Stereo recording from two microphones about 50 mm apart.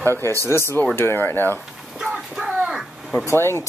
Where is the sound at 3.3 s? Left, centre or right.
Left.